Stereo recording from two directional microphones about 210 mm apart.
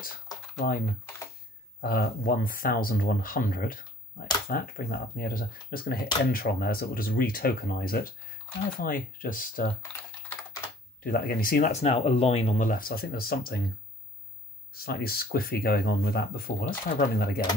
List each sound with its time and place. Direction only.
0.6 s speech: 40° left (ahead or behind)
9.9 s typing: 5° left (ahead or behind)
11.1 s speech: 45° left (ahead or behind)
14.7 s speech: 45° left (ahead or behind)